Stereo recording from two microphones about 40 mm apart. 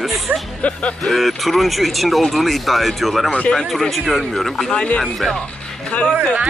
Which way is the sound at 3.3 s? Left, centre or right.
Left.